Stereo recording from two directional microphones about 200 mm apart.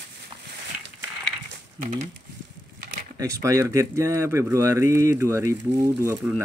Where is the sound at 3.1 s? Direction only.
15° right (ahead or behind).